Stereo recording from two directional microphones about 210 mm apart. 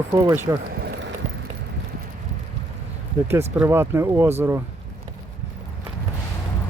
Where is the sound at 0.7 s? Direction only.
50° right (ahead or behind).